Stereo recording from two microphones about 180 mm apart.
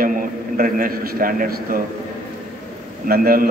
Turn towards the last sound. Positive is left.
turn(degrees=-55)  # may be behind; listen again after turning